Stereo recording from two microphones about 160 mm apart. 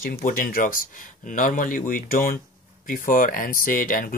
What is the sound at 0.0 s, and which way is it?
Speech, 60° left (ahead or behind).